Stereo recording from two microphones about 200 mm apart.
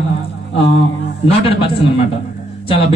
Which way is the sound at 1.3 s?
25° left (ahead or behind).